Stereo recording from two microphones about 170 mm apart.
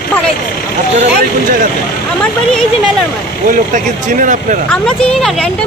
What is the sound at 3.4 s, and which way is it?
Speech, 50° right (ahead or behind).